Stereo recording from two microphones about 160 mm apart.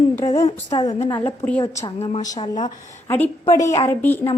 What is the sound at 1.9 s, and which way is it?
Speech, 35° left (ahead or behind).